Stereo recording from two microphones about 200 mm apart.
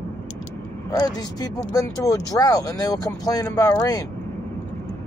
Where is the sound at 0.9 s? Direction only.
20° left (ahead or behind).